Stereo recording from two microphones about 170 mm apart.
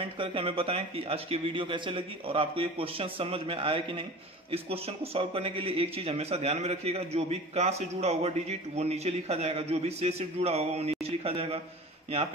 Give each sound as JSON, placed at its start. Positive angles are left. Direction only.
{"t": 0.0, "sound": "speech", "side_deg": -30}